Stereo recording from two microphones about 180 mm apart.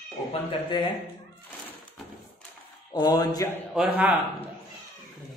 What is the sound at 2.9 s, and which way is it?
Speech, 20° left (ahead or behind).